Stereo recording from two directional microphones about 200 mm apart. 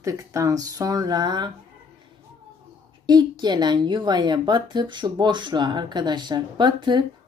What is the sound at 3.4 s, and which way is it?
Speech, 20° right (ahead or behind).